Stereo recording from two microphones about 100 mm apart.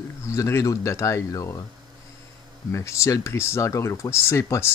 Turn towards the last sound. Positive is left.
turn(degrees=25)  # may be behind; listen again after turning